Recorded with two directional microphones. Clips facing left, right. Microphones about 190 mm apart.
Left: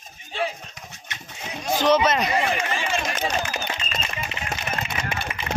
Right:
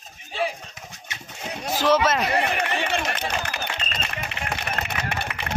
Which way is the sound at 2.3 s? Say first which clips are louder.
Even; 65° right (ahead or behind).